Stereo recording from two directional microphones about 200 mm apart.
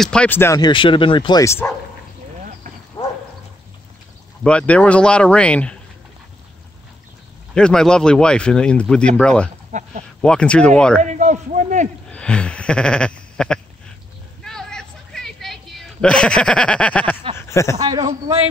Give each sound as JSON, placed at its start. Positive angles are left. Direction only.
{"t": 0.0, "sound": "speech", "side_deg": 5}
{"t": 4.4, "sound": "speech", "side_deg": 5}
{"t": 7.5, "sound": "speech", "side_deg": 5}
{"t": 9.7, "sound": "speech", "side_deg": -35}
{"t": 10.2, "sound": "speech", "side_deg": 5}
{"t": 11.0, "sound": "a sound", "side_deg": -35}
{"t": 12.1, "sound": "a sound", "side_deg": 5}
{"t": 17.5, "sound": "speech", "side_deg": 15}
{"t": 17.7, "sound": "a man's voice", "side_deg": -20}